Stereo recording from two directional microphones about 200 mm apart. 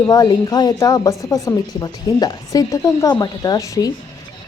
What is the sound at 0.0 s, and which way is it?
A woman's voice, 20° left (ahead or behind).